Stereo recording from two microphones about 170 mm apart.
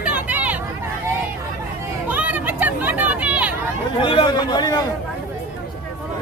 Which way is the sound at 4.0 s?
30° left (ahead or behind).